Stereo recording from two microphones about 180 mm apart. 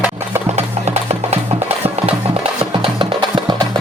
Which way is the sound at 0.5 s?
35° right (ahead or behind).